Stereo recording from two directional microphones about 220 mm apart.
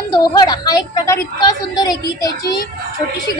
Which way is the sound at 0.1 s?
15° left (ahead or behind).